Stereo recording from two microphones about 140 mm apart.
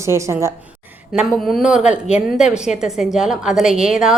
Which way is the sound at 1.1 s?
Centre (ahead or behind).